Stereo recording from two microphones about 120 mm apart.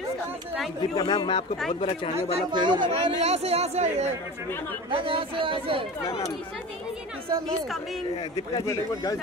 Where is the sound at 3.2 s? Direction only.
60° right (ahead or behind).